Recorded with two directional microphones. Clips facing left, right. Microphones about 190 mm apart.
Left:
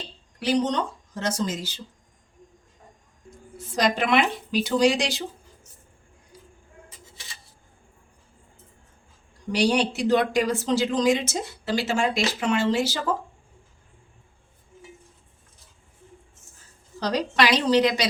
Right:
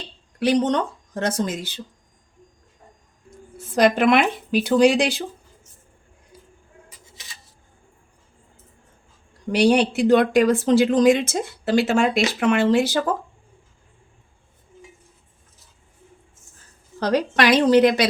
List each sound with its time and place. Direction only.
0.3 s speech: 60° right (ahead or behind)
3.8 s speech: 55° right (ahead or behind)
9.5 s speech: 55° right (ahead or behind)
17.0 s a woman's voice: 55° right (ahead or behind)